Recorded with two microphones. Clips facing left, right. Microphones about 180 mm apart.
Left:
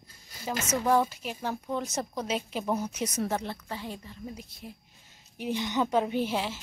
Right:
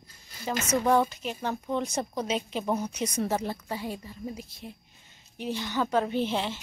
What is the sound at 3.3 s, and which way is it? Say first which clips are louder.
A woman's voice: right 3 dB; 10° right (ahead or behind).